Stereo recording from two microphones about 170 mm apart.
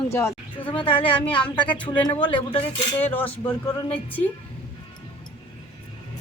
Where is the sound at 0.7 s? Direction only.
30° left (ahead or behind).